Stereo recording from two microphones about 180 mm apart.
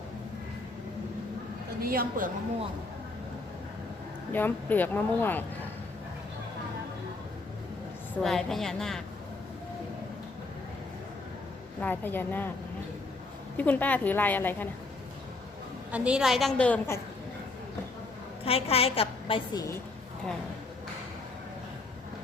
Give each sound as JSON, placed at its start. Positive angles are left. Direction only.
{"t": 1.8, "sound": "a woman's voice", "side_deg": -55}
{"t": 4.3, "sound": "speech", "side_deg": 10}
{"t": 8.2, "sound": "a woman's voice", "side_deg": 0}
{"t": 11.8, "sound": "speech", "side_deg": 10}
{"t": 13.6, "sound": "speech", "side_deg": 10}
{"t": 15.9, "sound": "a woman's voice", "side_deg": -5}
{"t": 18.4, "sound": "a woman's voice", "side_deg": 35}
{"t": 19.5, "sound": "speech", "side_deg": 15}